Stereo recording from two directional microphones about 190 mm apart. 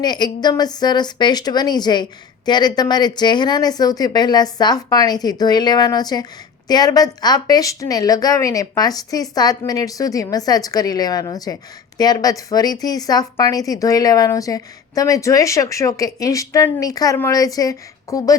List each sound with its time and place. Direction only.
0.0 s a woman's voice: 20° left (ahead or behind)